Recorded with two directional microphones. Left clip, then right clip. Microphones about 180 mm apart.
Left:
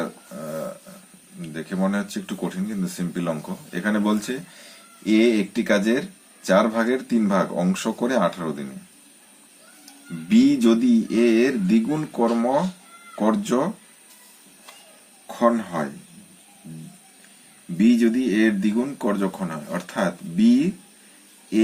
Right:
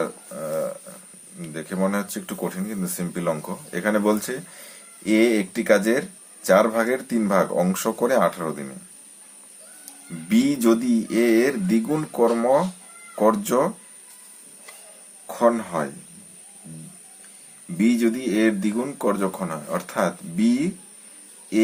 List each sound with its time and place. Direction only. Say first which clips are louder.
1.5 s speech: right 1 dB; 20° right (ahead or behind)
10.2 s speech: left 2 dB; 20° right (ahead or behind)
15.3 s speech: right 1 dB; 25° right (ahead or behind)
17.8 s speech: left 2 dB; 25° right (ahead or behind)